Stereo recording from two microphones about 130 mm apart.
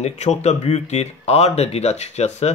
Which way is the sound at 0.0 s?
55° left (ahead or behind).